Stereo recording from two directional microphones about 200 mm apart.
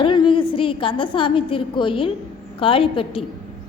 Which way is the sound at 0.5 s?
25° left (ahead or behind).